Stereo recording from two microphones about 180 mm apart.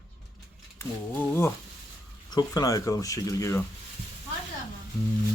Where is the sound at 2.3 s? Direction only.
20° left (ahead or behind).